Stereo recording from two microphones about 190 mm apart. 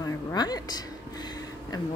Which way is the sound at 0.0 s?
20° left (ahead or behind).